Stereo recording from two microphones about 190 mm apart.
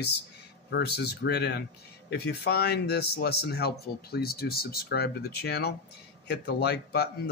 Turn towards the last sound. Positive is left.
turn(degrees=60)  # may be behind; listen again after turning